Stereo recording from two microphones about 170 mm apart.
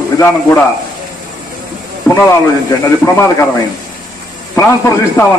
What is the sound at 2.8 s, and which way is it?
Speech, 15° left (ahead or behind).